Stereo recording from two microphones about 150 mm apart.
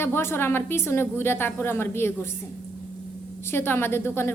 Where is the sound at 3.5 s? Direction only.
15° left (ahead or behind).